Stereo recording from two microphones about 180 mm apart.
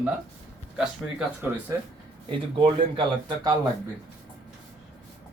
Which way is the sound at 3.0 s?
20° right (ahead or behind).